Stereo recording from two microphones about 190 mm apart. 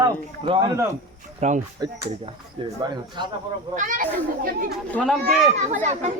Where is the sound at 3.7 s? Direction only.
45° right (ahead or behind).